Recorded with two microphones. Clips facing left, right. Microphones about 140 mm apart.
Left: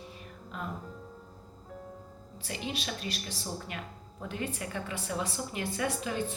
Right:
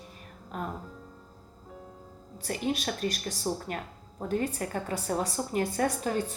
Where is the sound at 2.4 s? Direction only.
45° right (ahead or behind).